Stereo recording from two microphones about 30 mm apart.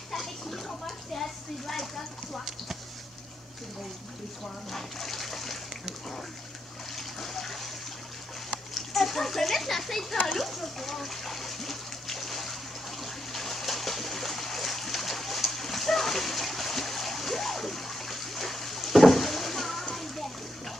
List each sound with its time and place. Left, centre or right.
0.1 s speech: centre
4.6 s speech: centre
7.0 s trickle: centre
8.9 s speech: centre
10.2 s water: centre